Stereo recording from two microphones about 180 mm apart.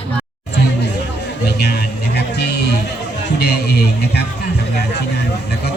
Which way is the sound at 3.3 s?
65° left (ahead or behind).